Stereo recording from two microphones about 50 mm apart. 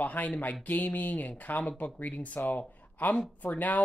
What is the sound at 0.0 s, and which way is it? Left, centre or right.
Speech, left.